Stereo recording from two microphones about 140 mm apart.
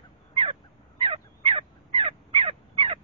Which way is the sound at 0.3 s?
40° right (ahead or behind).